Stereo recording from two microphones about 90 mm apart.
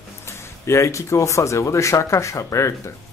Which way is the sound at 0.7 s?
35° left (ahead or behind).